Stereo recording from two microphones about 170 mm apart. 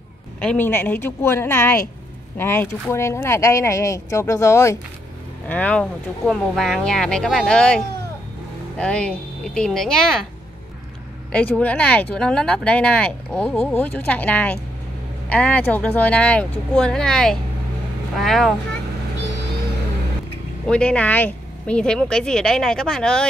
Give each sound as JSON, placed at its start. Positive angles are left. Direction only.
{"t": 0.4, "sound": "speech", "side_deg": 10}
{"t": 11.3, "sound": "speech", "side_deg": 10}
{"t": 20.6, "sound": "speech", "side_deg": 5}